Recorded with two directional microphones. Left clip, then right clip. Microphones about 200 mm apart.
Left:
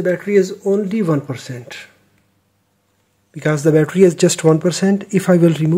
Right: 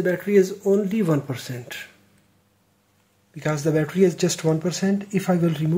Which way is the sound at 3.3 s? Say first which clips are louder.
Left 8 dB; 40° left (ahead or behind).